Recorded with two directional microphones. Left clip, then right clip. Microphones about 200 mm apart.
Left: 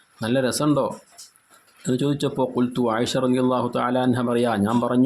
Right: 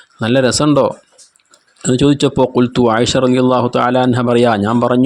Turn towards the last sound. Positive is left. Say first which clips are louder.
# right 9 dB
turn(degrees=-35)  # may be behind; listen again after turning